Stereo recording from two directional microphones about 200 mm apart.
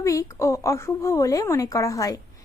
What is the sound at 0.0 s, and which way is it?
A woman's voice, 15° left (ahead or behind).